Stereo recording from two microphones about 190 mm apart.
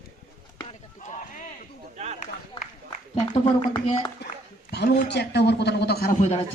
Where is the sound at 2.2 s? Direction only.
40° left (ahead or behind).